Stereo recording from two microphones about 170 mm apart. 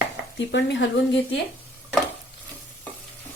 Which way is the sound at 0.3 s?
90° left.